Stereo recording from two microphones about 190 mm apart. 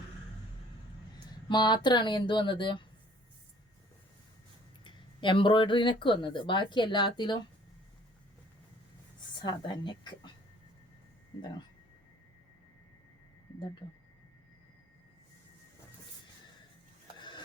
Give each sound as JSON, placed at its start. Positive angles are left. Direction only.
{"t": 1.5, "sound": "speech", "side_deg": 25}
{"t": 4.8, "sound": "speech", "side_deg": 25}
{"t": 9.4, "sound": "speech", "side_deg": 25}
{"t": 17.2, "sound": "a sound", "side_deg": 25}